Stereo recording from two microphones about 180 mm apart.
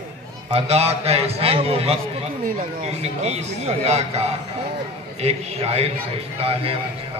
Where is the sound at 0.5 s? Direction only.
35° right (ahead or behind).